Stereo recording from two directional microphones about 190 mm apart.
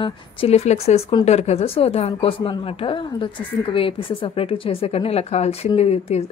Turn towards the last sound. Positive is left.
turn(degrees=35)  # may be behind; listen again after turning